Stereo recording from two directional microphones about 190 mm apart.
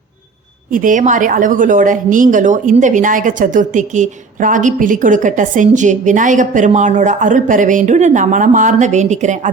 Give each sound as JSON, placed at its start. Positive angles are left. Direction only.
{"t": 0.7, "sound": "a woman's voice", "side_deg": -45}